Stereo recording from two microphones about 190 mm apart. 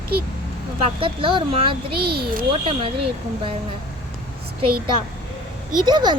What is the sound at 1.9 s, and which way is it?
Speech, 55° right (ahead or behind).